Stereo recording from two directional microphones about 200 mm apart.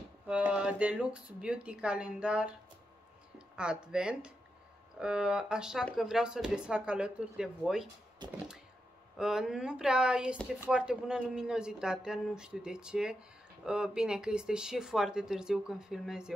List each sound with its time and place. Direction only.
0.3 s speech: 5° right (ahead or behind)
8.2 s a sound: 20° right (ahead or behind)
9.2 s speech: 5° right (ahead or behind)